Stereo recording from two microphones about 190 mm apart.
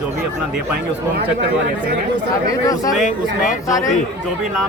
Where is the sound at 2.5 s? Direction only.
20° left (ahead or behind).